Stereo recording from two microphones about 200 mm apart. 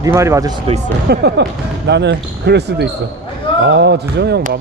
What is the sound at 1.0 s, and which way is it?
Speech, 55° right (ahead or behind).